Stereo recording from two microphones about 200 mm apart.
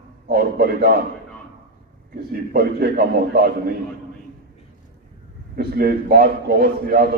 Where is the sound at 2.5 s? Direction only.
50° right (ahead or behind).